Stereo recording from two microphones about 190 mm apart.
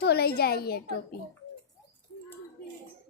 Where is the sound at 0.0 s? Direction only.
55° left (ahead or behind).